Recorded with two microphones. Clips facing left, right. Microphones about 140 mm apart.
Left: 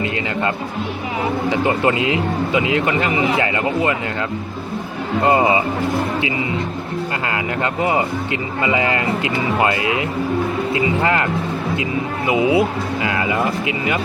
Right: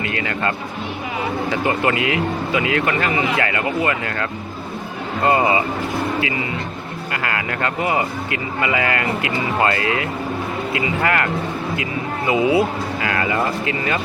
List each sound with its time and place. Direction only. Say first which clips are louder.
0.0 s speech: left 2 dB; 25° left (ahead or behind)
5.2 s speech: left 1 dB; 20° left (ahead or behind)
7.3 s speech: right 1 dB; 20° left (ahead or behind)